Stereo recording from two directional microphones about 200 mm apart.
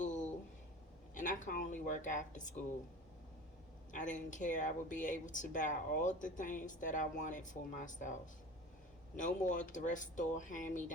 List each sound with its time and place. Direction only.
0.0 s a sound: 40° left (ahead or behind)
1.1 s speech: 40° left (ahead or behind)
3.9 s speech: 40° left (ahead or behind)
9.1 s speech: 40° left (ahead or behind)